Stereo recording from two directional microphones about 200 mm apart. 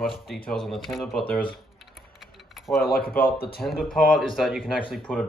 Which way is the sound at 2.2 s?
Centre (ahead or behind).